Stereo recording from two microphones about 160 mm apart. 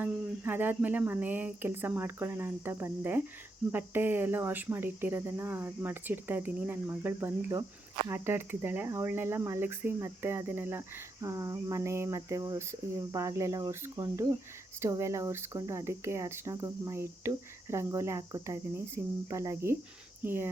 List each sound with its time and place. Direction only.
0.0 s speech: 10° right (ahead or behind)
13.1 s cricket: 20° right (ahead or behind)
14.8 s speech: 15° right (ahead or behind)